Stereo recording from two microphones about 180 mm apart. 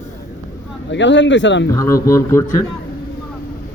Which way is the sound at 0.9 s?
85° left.